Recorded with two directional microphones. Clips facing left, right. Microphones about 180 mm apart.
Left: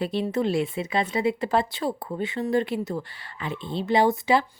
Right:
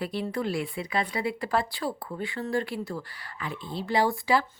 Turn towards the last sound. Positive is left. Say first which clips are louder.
# left 4 dB
turn(degrees=20)  # may be behind; listen again after turning